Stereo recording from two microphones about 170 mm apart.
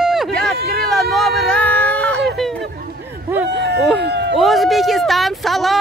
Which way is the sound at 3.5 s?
90° right.